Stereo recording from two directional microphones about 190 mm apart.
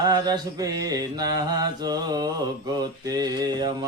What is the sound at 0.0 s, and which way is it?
Mantra, 20° right (ahead or behind).